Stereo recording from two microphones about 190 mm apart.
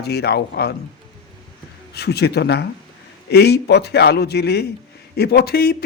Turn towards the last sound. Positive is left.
turn(degrees=55)  # may be behind; listen again after turning